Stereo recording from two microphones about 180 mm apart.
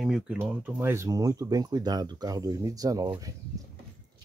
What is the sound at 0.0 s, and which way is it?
Speech, 5° right (ahead or behind).